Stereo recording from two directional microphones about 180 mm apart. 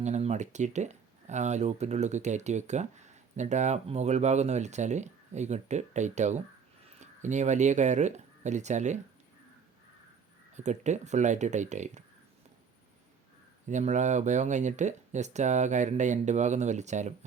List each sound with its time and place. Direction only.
0.0 s speech: 40° right (ahead or behind)
10.5 s speech: 40° right (ahead or behind)
13.7 s speech: 40° right (ahead or behind)